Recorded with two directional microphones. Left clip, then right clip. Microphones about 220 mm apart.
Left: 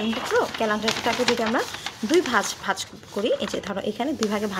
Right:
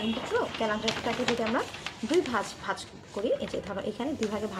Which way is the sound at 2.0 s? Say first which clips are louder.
Left 7 dB; 40° left (ahead or behind).